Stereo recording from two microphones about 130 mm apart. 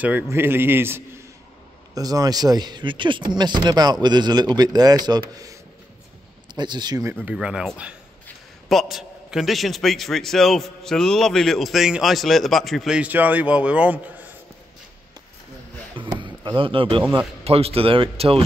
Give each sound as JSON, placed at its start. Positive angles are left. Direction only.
{"t": 0.0, "sound": "a man's voice", "side_deg": -15}
{"t": 2.0, "sound": "speech", "side_deg": -30}
{"t": 7.2, "sound": "a man's voice", "side_deg": -5}
{"t": 16.2, "sound": "speech", "side_deg": -35}